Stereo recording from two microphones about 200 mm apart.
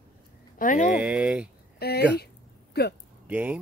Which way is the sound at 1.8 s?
50° left (ahead or behind).